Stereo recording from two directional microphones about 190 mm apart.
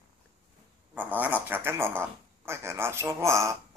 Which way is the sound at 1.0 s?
10° right (ahead or behind).